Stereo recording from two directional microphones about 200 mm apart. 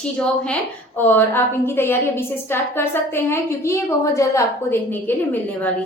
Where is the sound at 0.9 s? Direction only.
10° left (ahead or behind).